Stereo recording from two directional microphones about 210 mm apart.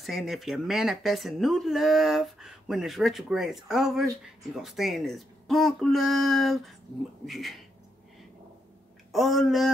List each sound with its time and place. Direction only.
0.0 s speech: centre (ahead or behind)
9.1 s speech: centre (ahead or behind)